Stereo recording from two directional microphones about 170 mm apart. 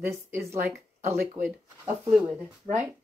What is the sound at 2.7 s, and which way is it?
Speech, 35° right (ahead or behind).